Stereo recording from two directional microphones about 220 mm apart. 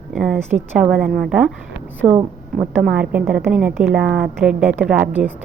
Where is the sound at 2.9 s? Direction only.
5° right (ahead or behind).